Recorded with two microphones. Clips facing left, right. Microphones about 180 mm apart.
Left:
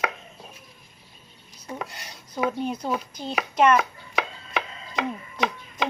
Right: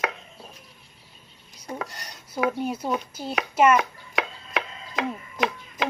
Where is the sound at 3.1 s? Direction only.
5° right (ahead or behind).